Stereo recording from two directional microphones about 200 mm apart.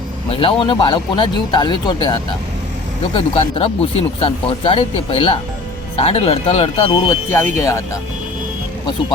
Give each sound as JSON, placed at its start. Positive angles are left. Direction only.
{"t": 0.3, "sound": "speech", "side_deg": 25}
{"t": 3.2, "sound": "speech", "side_deg": 25}